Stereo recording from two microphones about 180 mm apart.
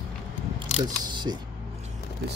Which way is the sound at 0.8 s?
25° right (ahead or behind).